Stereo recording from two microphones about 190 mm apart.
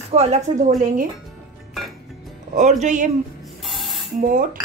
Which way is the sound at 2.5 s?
40° right (ahead or behind).